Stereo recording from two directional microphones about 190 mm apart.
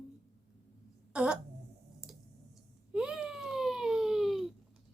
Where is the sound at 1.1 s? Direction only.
5° right (ahead or behind).